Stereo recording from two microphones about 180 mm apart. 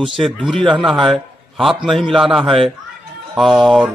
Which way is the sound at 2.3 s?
30° right (ahead or behind).